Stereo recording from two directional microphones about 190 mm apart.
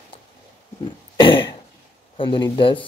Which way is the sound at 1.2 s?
25° left (ahead or behind).